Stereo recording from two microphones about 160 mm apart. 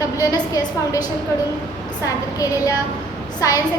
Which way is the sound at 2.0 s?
20° left (ahead or behind).